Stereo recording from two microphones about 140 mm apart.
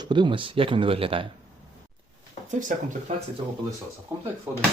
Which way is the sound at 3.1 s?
50° right (ahead or behind).